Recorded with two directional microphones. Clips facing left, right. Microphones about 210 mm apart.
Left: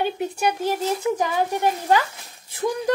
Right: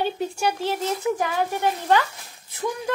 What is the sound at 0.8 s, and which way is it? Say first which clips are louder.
Speech: left 1 dB; 15° left (ahead or behind).